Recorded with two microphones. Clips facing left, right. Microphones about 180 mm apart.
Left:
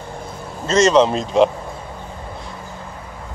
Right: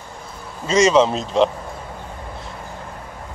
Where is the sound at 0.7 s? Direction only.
10° right (ahead or behind).